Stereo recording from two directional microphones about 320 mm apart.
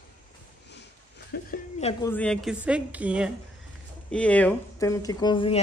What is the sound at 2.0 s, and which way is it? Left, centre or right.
Speech, centre.